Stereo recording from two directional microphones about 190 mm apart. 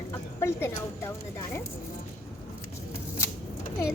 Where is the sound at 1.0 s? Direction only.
15° left (ahead or behind).